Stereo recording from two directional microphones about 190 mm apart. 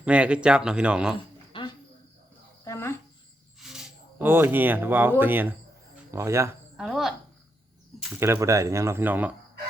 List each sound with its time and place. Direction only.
0.0 s speech: 5° right (ahead or behind)
1.5 s cricket: 25° left (ahead or behind)
2.6 s cricket: 15° left (ahead or behind)
3.6 s a sound: centre (ahead or behind)
5.2 s speech: 10° right (ahead or behind)
6.7 s speech: centre (ahead or behind)
8.1 s speech: 15° right (ahead or behind)